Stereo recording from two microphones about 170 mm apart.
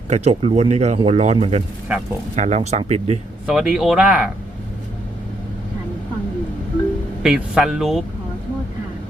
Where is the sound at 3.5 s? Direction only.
5° right (ahead or behind).